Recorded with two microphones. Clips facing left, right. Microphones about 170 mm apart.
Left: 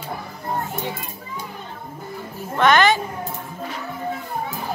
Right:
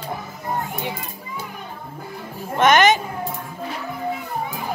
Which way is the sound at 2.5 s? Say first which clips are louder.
Right 1 dB; 20° right (ahead or behind).